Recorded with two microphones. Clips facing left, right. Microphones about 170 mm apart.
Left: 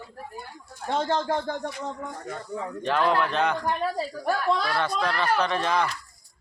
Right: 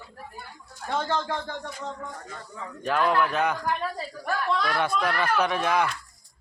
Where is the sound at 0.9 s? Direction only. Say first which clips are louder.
Left 2 dB; 25° left (ahead or behind).